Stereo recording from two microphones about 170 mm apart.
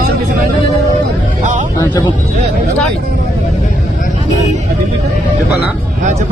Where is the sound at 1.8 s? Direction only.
25° left (ahead or behind).